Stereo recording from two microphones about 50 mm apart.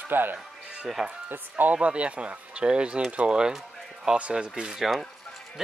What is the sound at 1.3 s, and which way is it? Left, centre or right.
Speech, right.